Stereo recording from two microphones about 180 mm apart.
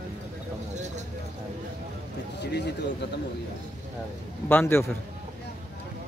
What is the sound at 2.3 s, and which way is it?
Speech, 70° left (ahead or behind).